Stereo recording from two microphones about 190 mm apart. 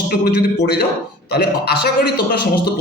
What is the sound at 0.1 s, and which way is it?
A man's voice, 55° left (ahead or behind).